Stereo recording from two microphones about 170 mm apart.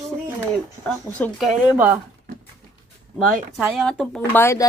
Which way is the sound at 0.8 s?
5° left (ahead or behind).